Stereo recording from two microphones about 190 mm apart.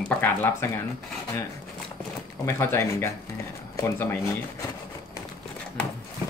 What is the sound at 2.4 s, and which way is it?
Speech, 15° left (ahead or behind).